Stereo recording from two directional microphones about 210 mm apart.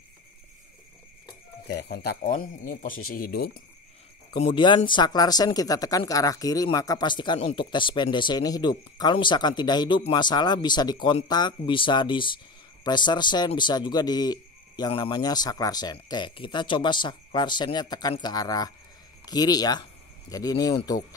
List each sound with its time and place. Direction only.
1.7 s speech: 50° left (ahead or behind)
4.3 s speech: 25° left (ahead or behind)